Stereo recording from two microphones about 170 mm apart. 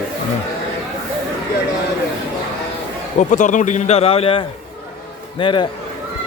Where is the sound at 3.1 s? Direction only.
45° left (ahead or behind); by 5.6 s 30° left (ahead or behind).